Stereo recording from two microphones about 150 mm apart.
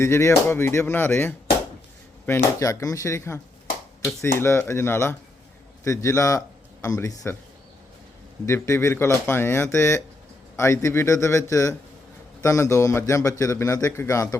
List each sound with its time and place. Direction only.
0.0 s speech: 20° left (ahead or behind)
8.4 s speech: 20° left (ahead or behind)